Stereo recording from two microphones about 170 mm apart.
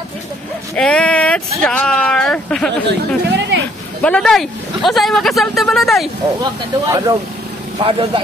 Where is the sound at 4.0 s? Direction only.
5° left (ahead or behind).